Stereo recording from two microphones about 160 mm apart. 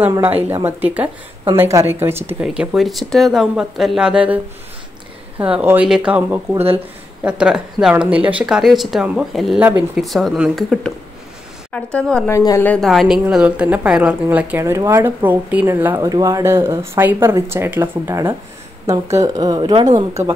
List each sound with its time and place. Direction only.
0.0 s a woman's voice: 10° right (ahead or behind)
5.4 s a woman's voice: 10° right (ahead or behind)
9.6 s a woman's voice: 10° right (ahead or behind)
10.0 s speech: centre (ahead or behind)
12.3 s a woman's voice: 20° left (ahead or behind); by 19.9 s 30° right (ahead or behind)